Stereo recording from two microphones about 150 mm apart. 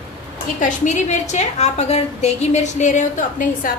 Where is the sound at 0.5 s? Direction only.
55° left (ahead or behind).